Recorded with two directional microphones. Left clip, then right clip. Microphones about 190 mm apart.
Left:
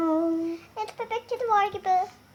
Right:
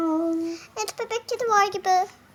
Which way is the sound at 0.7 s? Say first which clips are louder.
Right 3 dB; 55° right (ahead or behind).